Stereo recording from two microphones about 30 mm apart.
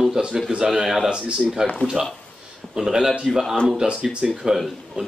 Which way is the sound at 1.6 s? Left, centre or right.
Right.